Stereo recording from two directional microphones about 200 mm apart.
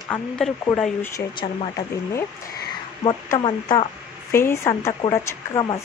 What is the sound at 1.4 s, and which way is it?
Speech, 25° left (ahead or behind).